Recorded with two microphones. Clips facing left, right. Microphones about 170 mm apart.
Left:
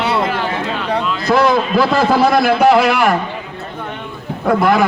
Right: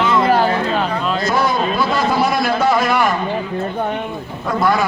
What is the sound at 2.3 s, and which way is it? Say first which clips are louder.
Speech: left 5 dB; 65° left (ahead or behind).